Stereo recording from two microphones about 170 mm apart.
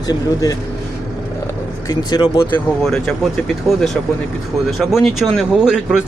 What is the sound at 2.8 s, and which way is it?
Speech, 5° left (ahead or behind).